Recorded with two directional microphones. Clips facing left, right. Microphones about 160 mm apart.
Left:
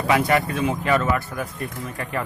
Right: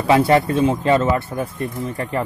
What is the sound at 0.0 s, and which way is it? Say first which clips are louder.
Speech: right 5 dB; 30° right (ahead or behind).